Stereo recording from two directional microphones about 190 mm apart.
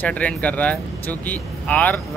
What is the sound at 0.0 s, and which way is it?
Speech, 5° left (ahead or behind).